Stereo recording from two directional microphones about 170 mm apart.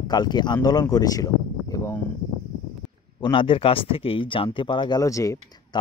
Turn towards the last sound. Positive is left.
turn(degrees=20)  # may be behind; listen again after turning